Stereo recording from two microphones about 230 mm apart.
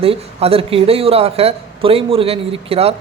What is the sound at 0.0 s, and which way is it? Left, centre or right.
A man's voice, right.